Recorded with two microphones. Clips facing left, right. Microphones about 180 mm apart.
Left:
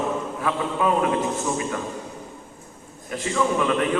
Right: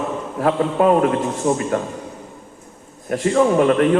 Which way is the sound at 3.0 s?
50° right (ahead or behind).